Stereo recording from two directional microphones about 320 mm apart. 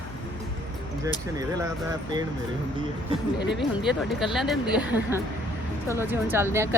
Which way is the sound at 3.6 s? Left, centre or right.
Centre.